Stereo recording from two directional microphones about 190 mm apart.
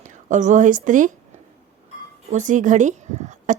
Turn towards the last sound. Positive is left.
turn(degrees=-40)  # may be behind; listen again after turning